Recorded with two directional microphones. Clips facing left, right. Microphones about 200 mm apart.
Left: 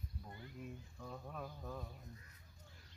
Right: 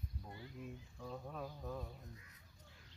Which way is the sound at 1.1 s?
Centre (ahead or behind).